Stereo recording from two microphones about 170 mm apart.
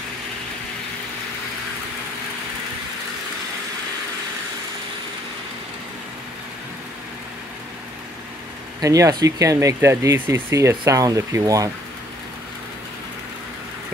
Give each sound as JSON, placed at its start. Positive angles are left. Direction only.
{"t": 8.8, "sound": "speech", "side_deg": -20}